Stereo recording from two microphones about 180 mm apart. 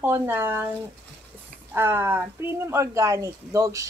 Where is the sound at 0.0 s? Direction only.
10° right (ahead or behind).